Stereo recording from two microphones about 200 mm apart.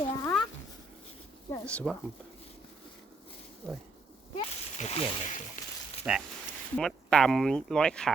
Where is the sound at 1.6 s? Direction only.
5° left (ahead or behind).